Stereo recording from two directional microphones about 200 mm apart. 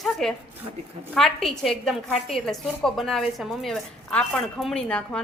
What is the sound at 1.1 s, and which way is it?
A woman's voice, centre (ahead or behind).